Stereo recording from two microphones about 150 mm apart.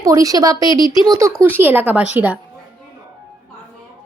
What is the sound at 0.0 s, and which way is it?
Speech, 20° right (ahead or behind).